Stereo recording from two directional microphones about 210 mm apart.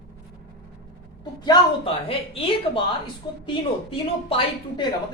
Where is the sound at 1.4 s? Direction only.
25° left (ahead or behind).